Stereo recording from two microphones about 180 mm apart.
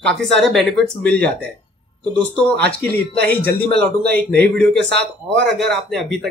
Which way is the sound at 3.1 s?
60° right (ahead or behind).